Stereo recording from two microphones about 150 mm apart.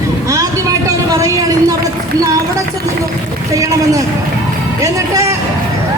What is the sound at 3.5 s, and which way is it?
A woman's voice, 20° right (ahead or behind).